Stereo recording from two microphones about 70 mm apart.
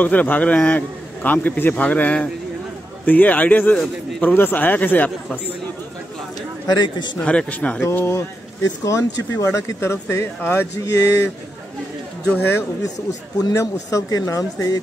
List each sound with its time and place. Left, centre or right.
0.0 s a man's voice: left
6.7 s a man's voice: left
7.2 s a man's voice: centre
7.9 s speech: left
8.6 s speech: left
10.9 s speech: left
12.4 s speech: left
13.6 s speech: left